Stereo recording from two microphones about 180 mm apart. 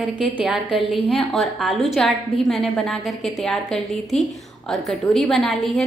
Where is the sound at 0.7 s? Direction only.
30° left (ahead or behind).